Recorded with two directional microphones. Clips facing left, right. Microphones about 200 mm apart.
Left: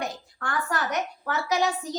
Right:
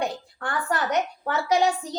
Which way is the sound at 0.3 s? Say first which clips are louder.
Right 1 dB; 30° right (ahead or behind).